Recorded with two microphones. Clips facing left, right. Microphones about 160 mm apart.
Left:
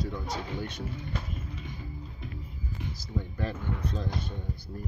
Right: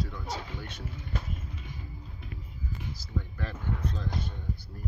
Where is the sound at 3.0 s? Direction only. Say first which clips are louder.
Left 4 dB; 20° left (ahead or behind).